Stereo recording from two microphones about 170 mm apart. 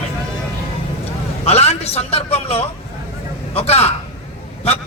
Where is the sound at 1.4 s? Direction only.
40° left (ahead or behind).